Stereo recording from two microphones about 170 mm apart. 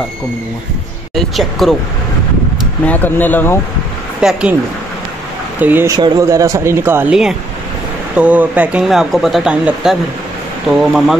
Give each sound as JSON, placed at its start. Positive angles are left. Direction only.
{"t": 1.1, "sound": "speech", "side_deg": 0}
{"t": 2.8, "sound": "speech", "side_deg": 10}
{"t": 4.2, "sound": "speech", "side_deg": -5}
{"t": 5.6, "sound": "speech", "side_deg": -10}
{"t": 5.9, "sound": "speech", "side_deg": -20}